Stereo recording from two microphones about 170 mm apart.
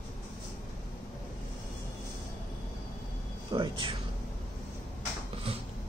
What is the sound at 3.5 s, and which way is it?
Speech, 30° right (ahead or behind).